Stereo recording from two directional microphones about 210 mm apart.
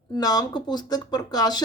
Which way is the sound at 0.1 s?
20° left (ahead or behind).